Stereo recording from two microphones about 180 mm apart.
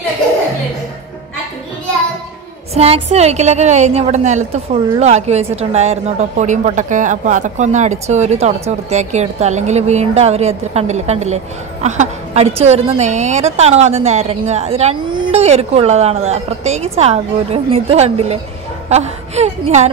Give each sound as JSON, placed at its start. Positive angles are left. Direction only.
{"t": 2.7, "sound": "a woman's voice", "side_deg": -35}